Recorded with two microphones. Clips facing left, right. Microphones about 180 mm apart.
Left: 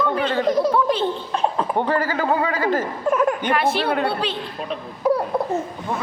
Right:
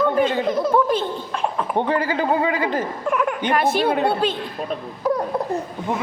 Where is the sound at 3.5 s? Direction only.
45° right (ahead or behind).